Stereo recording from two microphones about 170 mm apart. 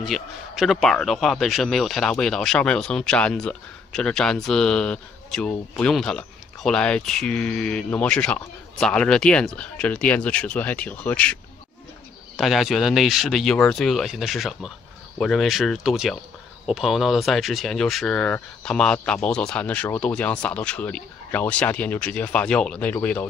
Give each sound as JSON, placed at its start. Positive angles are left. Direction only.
{"t": 0.0, "sound": "a man's voice", "side_deg": 0}
{"t": 12.4, "sound": "a man's voice", "side_deg": 0}